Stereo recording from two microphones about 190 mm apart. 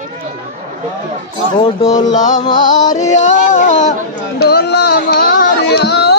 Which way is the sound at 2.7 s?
40° left (ahead or behind).